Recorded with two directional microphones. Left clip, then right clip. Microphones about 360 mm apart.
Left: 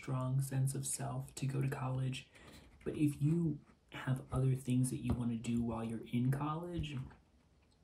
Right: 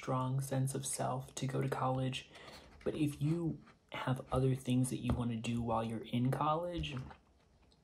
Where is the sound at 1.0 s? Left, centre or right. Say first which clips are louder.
Right 6 dB; right.